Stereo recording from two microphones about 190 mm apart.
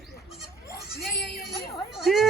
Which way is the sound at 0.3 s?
Centre (ahead or behind).